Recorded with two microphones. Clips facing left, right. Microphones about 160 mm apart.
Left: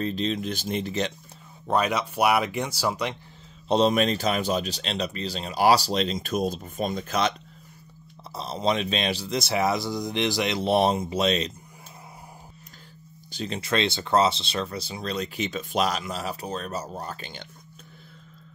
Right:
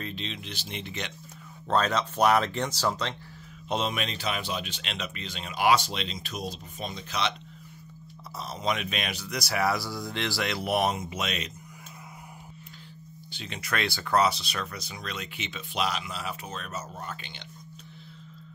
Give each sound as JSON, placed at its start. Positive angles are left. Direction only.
{"t": 0.0, "sound": "speech", "side_deg": 40}
{"t": 1.7, "sound": "speech", "side_deg": 10}
{"t": 3.6, "sound": "speech", "side_deg": 35}
{"t": 8.4, "sound": "speech", "side_deg": 30}
{"t": 13.3, "sound": "speech", "side_deg": 40}
{"t": 13.6, "sound": "speech", "side_deg": 25}